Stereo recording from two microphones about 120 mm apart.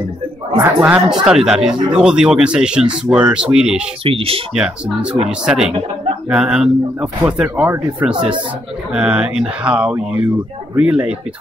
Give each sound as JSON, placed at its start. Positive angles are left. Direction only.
{"t": 0.7, "sound": "speech", "side_deg": -5}
{"t": 4.0, "sound": "speech", "side_deg": -50}
{"t": 4.6, "sound": "speech", "side_deg": -10}